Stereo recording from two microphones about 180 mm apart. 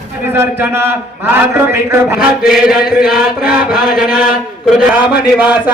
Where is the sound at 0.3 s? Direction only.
10° right (ahead or behind).